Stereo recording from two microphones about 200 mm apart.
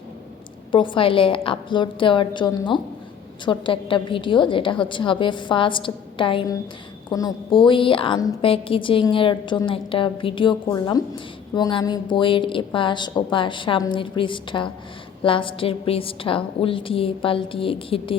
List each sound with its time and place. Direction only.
0.7 s a woman's voice: 25° left (ahead or behind)